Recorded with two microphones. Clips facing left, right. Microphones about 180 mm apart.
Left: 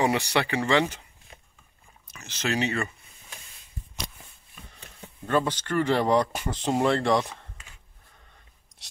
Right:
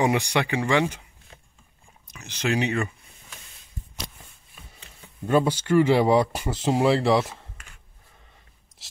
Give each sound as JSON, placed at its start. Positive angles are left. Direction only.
{"t": 0.0, "sound": "speech", "side_deg": -15}
{"t": 2.0, "sound": "speech", "side_deg": -15}
{"t": 5.2, "sound": "speech", "side_deg": -10}